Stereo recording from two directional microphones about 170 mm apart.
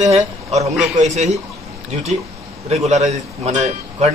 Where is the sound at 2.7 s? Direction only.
40° right (ahead or behind).